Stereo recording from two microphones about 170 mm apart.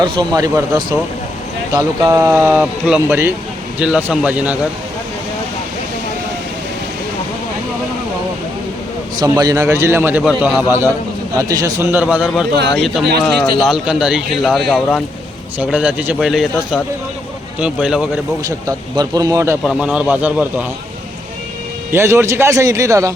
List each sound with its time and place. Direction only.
0.0 s a man's voice: 25° right (ahead or behind); by 4.5 s 5° right (ahead or behind)
9.2 s a man's voice: 20° right (ahead or behind); by 15.0 s centre (ahead or behind)
15.5 s a man's voice: 10° right (ahead or behind)
18.4 s speech: 20° right (ahead or behind)
19.6 s a man's voice: 5° right (ahead or behind)
21.9 s a man's voice: 15° right (ahead or behind)